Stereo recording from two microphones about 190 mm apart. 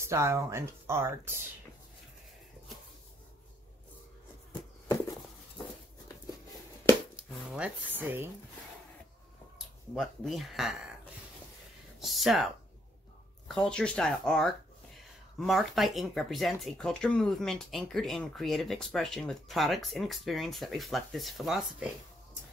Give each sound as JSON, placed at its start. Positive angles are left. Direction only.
{"t": 0.0, "sound": "speech", "side_deg": -15}
{"t": 7.2, "sound": "speech", "side_deg": -5}
{"t": 9.9, "sound": "speech", "side_deg": 0}
{"t": 12.0, "sound": "speech", "side_deg": 0}
{"t": 13.5, "sound": "speech", "side_deg": 5}